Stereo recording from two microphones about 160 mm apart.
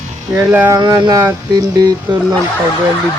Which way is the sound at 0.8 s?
20° right (ahead or behind).